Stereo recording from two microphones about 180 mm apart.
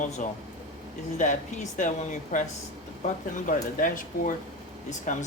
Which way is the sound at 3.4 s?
45° left (ahead or behind).